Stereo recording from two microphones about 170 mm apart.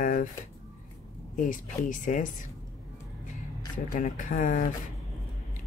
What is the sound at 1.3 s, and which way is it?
Speech, 50° left (ahead or behind).